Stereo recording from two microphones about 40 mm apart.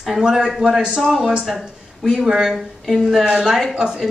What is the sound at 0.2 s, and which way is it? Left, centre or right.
A woman's voice, centre.